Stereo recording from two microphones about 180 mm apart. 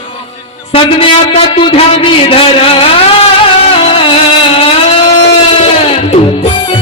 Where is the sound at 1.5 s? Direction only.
30° left (ahead or behind).